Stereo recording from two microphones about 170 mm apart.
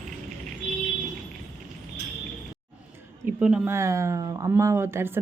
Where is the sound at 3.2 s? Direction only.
10° right (ahead or behind).